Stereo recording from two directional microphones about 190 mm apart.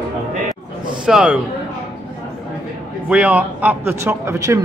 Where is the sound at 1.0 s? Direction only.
5° right (ahead or behind).